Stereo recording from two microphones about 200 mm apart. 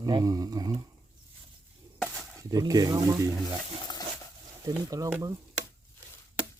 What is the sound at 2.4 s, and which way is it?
Speech, 20° right (ahead or behind).